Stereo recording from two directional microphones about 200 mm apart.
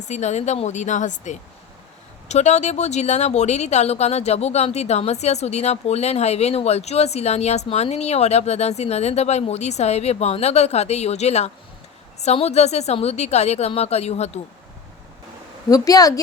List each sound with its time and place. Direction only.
0.0 s speech: 35° left (ahead or behind)
15.7 s a woman's voice: 20° left (ahead or behind)